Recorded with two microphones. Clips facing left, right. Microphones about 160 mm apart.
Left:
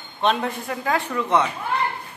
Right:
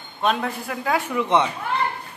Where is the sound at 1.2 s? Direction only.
15° right (ahead or behind).